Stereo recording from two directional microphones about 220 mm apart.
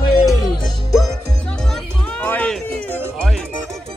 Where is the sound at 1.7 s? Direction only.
5° left (ahead or behind).